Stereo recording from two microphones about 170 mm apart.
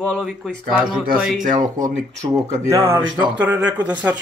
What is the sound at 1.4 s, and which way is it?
Speech, 50° right (ahead or behind).